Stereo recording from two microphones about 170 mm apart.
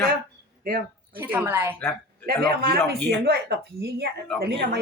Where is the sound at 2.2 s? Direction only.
65° right (ahead or behind).